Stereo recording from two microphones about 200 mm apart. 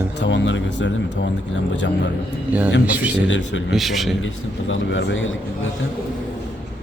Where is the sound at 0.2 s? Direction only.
65° left (ahead or behind).